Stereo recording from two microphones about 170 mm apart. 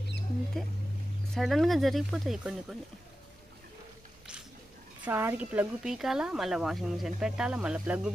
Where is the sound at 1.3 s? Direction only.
Centre (ahead or behind).